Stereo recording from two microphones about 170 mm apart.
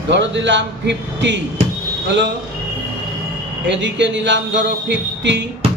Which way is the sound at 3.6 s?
90° right.